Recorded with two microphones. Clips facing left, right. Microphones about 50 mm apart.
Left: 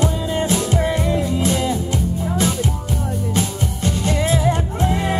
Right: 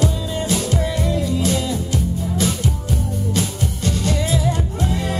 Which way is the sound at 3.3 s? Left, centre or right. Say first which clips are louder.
Left 1 dB; left.